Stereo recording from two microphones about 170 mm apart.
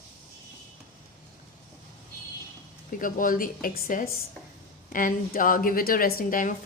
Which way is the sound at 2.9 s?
55° left (ahead or behind).